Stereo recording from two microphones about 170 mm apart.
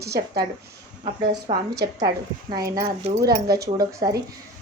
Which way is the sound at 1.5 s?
35° right (ahead or behind).